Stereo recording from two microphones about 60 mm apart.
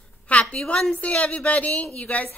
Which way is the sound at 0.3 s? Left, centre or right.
Left.